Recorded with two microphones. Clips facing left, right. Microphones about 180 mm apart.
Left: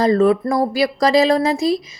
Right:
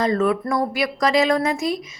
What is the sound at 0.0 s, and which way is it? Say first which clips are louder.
Speech: left 5 dB; 35° left (ahead or behind).